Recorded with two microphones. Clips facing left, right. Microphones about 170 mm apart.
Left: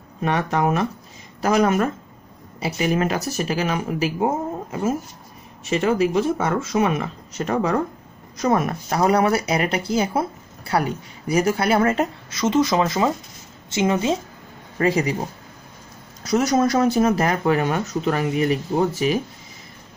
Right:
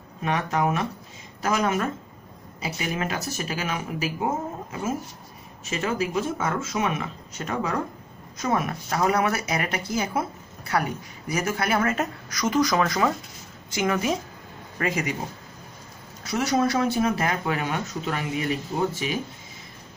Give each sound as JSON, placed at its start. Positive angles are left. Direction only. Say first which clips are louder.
{"t": 0.2, "sound": "speech", "louder": "left 4 dB", "side_deg": 40}
{"t": 5.7, "sound": "speech", "louder": "left 7 dB", "side_deg": 35}
{"t": 16.3, "sound": "speech", "louder": "left 5 dB", "side_deg": 45}